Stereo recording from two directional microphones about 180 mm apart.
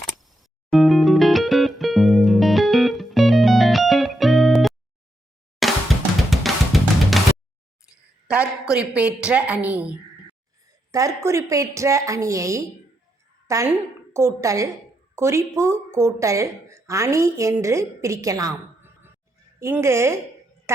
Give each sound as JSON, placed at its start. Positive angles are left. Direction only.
{"t": 0.2, "sound": "music", "side_deg": 0}
{"t": 5.6, "sound": "drum", "side_deg": 0}
{"t": 8.3, "sound": "speech", "side_deg": -5}
{"t": 10.7, "sound": "a woman's voice", "side_deg": -20}